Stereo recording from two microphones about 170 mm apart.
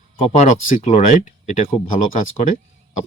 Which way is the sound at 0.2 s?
45° left (ahead or behind).